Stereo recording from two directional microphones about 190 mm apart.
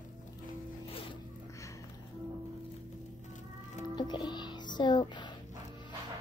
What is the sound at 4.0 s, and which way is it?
A child's voice, 20° left (ahead or behind).